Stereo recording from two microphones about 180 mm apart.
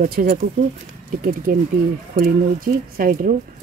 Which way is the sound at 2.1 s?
50° right (ahead or behind).